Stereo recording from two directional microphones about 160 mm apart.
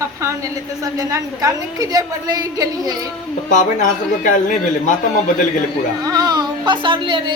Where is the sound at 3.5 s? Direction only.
50° left (ahead or behind).